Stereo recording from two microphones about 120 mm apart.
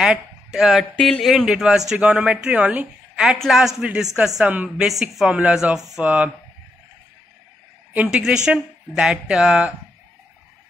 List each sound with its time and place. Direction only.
0.0 s speech: 5° right (ahead or behind)
4.8 s speech: centre (ahead or behind)
7.9 s speech: 10° right (ahead or behind)